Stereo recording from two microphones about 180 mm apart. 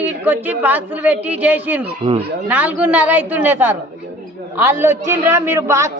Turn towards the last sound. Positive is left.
turn(degrees=-15)  # may be behind; listen again after turning